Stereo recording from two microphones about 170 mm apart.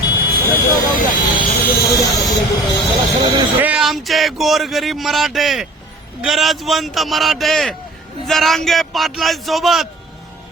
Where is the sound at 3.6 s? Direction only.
5° right (ahead or behind).